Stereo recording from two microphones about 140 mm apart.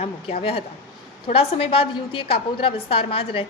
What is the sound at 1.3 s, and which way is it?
A woman's voice, 40° left (ahead or behind).